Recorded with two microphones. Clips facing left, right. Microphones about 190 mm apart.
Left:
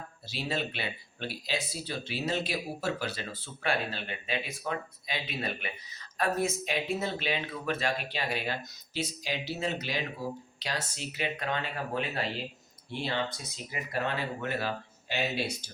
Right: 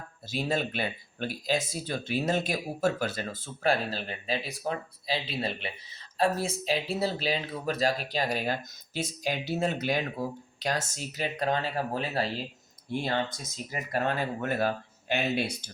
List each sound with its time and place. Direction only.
0.3 s speech: 45° right (ahead or behind)